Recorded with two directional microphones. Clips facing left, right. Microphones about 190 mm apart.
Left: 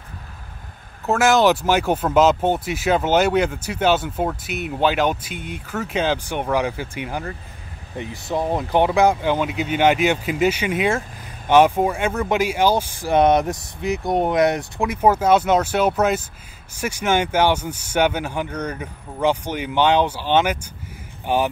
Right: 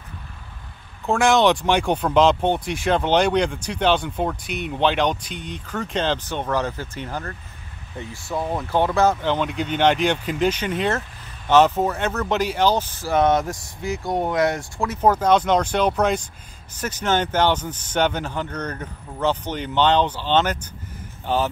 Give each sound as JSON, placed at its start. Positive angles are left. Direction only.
{"t": 1.0, "sound": "speech", "side_deg": 5}